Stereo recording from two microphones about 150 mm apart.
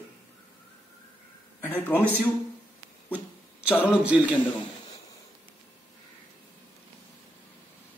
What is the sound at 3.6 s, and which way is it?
Speech, 10° right (ahead or behind).